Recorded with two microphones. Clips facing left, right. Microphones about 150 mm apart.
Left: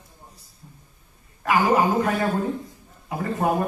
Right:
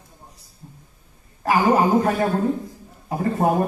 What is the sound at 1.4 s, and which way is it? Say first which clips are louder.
A man's voice: right 2 dB; 35° right (ahead or behind).